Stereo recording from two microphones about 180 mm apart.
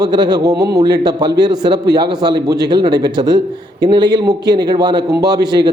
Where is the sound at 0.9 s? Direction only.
25° right (ahead or behind).